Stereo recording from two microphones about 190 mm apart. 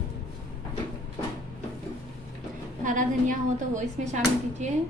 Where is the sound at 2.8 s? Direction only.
45° right (ahead or behind).